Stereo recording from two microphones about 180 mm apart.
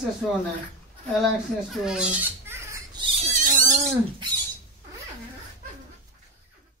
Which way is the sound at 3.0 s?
40° right (ahead or behind).